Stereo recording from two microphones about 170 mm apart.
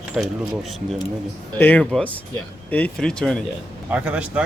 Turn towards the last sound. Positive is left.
turn(degrees=-5)  # may be behind; listen again after turning